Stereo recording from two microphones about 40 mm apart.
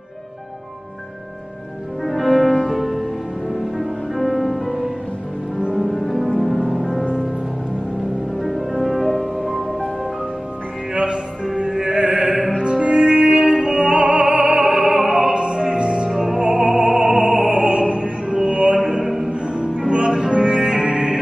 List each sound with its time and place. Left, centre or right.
2.0 s music: centre
8.4 s music: centre
10.9 s music: right
14.6 s music: centre
15.3 s music: right
16.2 s opera: centre
18.3 s music: centre
18.8 s opera: centre
19.0 s music: centre
19.4 s music: right